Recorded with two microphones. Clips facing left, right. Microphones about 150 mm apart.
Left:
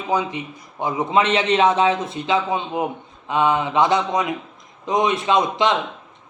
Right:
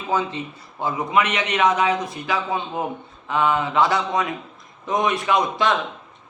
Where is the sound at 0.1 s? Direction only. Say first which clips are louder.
Left 1 dB; 15° left (ahead or behind).